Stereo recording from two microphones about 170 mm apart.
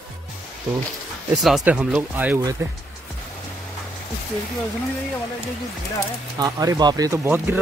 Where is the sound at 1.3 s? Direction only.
Centre (ahead or behind).